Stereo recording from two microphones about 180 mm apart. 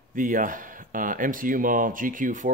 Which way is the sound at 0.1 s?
50° right (ahead or behind).